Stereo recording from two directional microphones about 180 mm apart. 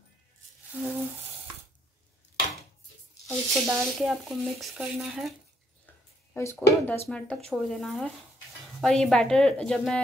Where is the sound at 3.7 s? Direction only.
5° right (ahead or behind).